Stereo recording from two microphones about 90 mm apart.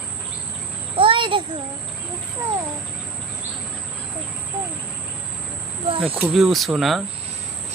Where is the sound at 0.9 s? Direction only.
75° right (ahead or behind).